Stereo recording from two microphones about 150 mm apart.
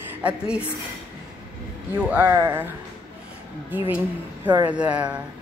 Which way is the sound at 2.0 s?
10° right (ahead or behind).